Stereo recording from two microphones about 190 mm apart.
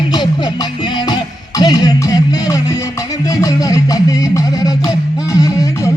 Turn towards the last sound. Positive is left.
turn(degrees=20)  # may be behind; listen again after turning